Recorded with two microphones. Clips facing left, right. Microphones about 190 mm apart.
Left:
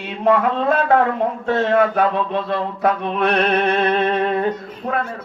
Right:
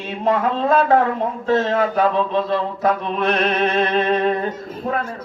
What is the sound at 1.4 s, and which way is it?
Speech, 60° left (ahead or behind).